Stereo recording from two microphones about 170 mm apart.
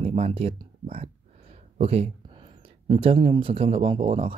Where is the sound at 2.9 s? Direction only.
30° right (ahead or behind).